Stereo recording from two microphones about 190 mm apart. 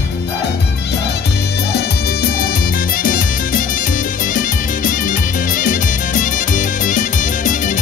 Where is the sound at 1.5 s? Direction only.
60° left (ahead or behind).